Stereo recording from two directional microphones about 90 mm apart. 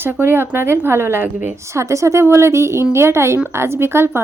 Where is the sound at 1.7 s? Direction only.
35° right (ahead or behind).